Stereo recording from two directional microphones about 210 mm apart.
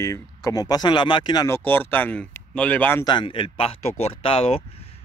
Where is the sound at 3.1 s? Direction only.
25° left (ahead or behind).